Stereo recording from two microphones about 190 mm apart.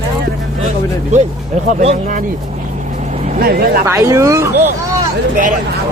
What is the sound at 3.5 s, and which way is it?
Speech, 55° right (ahead or behind).